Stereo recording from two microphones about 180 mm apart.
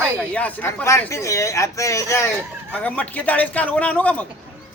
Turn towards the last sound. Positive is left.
turn(degrees=10)  # may be behind; listen again after turning